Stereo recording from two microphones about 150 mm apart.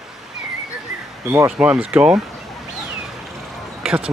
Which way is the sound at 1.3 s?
10° right (ahead or behind).